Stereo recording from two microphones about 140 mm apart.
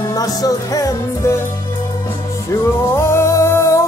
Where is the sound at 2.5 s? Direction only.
20° left (ahead or behind).